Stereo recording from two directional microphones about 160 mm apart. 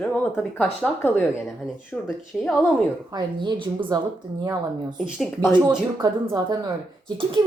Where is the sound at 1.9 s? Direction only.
Centre (ahead or behind).